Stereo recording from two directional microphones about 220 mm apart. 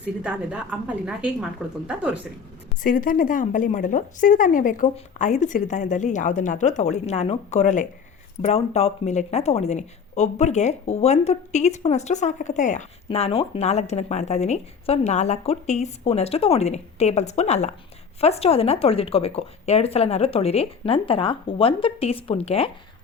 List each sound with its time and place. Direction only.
0.2 s a woman's voice: 5° right (ahead or behind)
2.8 s a woman's voice: 40° left (ahead or behind)